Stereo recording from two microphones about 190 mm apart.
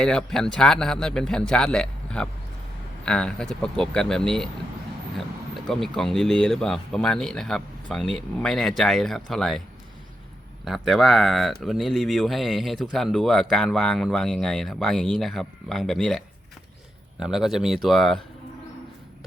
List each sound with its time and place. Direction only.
0.0 s speech: 5° left (ahead or behind)
5.1 s a sound: centre (ahead or behind)
6.0 s speech: centre (ahead or behind)
10.7 s speech: centre (ahead or behind)